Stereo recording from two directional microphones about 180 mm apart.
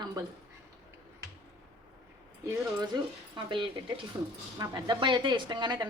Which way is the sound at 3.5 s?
30° right (ahead or behind).